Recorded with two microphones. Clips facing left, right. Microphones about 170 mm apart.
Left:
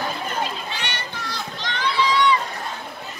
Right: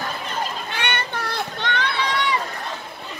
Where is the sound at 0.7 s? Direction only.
55° right (ahead or behind).